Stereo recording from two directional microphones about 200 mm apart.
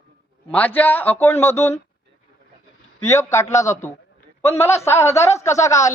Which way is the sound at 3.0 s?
15° left (ahead or behind).